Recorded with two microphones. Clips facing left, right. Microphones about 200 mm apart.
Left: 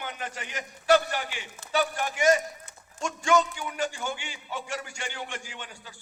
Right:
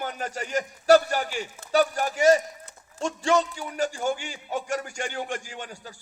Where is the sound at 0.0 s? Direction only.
40° right (ahead or behind).